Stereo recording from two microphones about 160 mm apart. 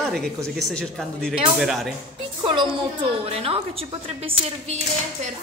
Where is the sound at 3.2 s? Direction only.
35° right (ahead or behind).